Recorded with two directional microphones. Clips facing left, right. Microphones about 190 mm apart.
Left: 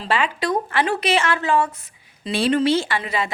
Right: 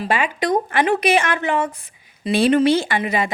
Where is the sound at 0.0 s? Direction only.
15° right (ahead or behind).